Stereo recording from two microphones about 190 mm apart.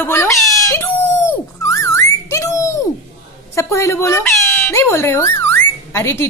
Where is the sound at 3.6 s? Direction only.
15° left (ahead or behind).